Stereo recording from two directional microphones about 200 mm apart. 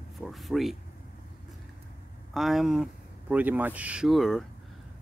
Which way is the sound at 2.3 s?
Centre (ahead or behind).